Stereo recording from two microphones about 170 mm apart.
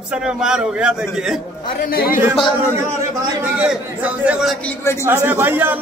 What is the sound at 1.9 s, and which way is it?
Speech, 60° left (ahead or behind).